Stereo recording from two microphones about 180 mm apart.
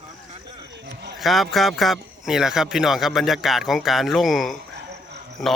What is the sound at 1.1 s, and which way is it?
A man's voice, centre (ahead or behind).